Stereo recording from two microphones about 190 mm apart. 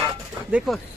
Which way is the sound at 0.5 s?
Centre (ahead or behind).